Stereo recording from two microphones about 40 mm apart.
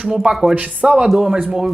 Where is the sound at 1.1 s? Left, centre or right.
Centre.